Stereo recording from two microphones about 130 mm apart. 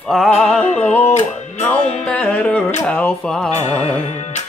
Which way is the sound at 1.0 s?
60° left (ahead or behind).